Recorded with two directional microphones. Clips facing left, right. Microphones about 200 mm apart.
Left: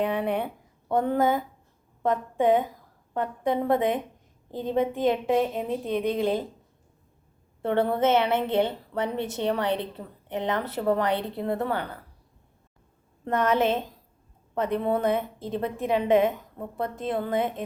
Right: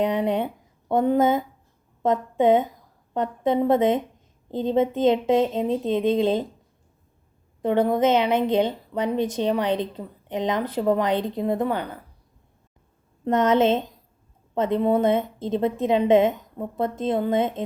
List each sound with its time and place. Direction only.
0.0 s a woman's voice: 20° right (ahead or behind)
7.6 s a woman's voice: 15° right (ahead or behind)
13.2 s a woman's voice: 20° right (ahead or behind)